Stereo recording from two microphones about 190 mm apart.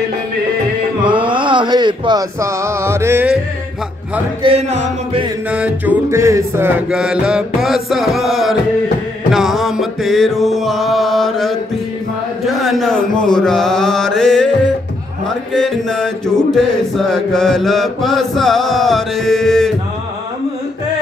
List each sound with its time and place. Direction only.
1.0 s speech: 25° right (ahead or behind)
4.4 s music: 30° right (ahead or behind)
5.5 s chant: 10° right (ahead or behind)
15.5 s chant: 5° left (ahead or behind)